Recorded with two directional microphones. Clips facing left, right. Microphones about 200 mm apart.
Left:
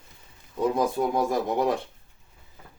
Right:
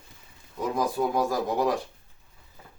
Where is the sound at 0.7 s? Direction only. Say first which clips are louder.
Right 2 dB; 25° left (ahead or behind).